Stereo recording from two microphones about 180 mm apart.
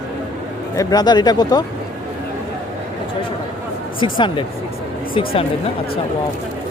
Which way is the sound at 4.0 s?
25° left (ahead or behind).